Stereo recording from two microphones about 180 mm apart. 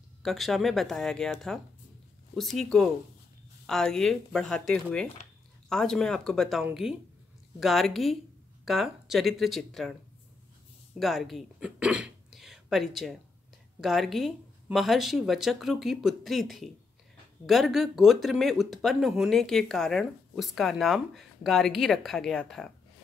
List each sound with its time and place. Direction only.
0.2 s speech: centre (ahead or behind)
11.0 s speech: centre (ahead or behind)